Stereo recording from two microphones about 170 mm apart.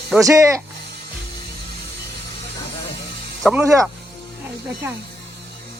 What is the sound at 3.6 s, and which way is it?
Speech, 20° right (ahead or behind).